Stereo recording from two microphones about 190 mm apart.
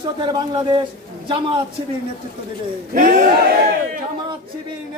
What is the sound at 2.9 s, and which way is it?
Speech, 45° right (ahead or behind).